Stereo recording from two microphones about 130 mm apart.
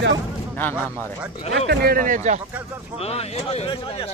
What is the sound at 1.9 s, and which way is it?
Speech, 85° right.